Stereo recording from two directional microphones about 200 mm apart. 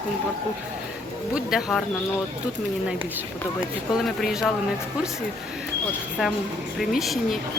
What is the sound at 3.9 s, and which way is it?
Speech, centre (ahead or behind).